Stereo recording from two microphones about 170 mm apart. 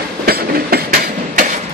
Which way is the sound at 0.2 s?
60° right (ahead or behind).